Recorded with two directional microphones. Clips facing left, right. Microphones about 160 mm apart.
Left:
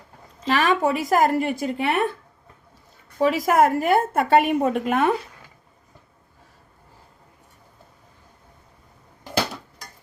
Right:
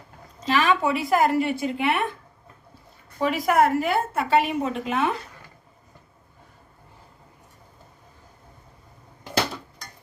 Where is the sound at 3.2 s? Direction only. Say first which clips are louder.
Left 2 dB; 45° left (ahead or behind).